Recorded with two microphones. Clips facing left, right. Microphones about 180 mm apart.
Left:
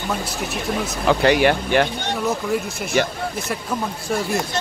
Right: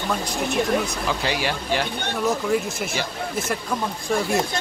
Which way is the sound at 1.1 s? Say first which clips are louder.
Left 12 dB; 60° left (ahead or behind).